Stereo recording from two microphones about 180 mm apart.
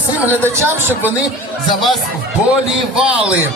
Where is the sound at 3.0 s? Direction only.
5° right (ahead or behind).